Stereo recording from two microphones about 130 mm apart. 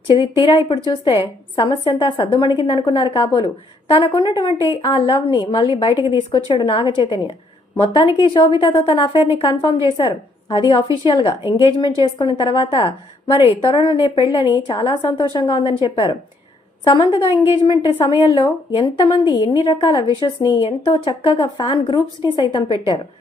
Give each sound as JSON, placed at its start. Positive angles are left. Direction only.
{"t": 0.1, "sound": "a woman's voice", "side_deg": 40}